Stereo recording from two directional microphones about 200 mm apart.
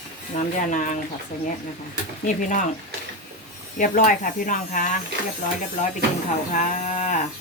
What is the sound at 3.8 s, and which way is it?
Speech, 40° left (ahead or behind).